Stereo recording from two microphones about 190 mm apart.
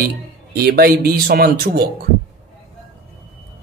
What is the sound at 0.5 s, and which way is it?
Speech, 55° right (ahead or behind).